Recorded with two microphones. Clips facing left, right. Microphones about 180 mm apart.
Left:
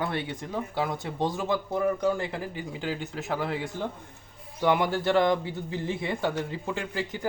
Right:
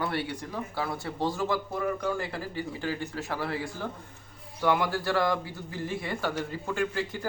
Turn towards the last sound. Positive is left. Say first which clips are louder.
# right 2 dB
turn(degrees=20)  # may be behind; listen again after turning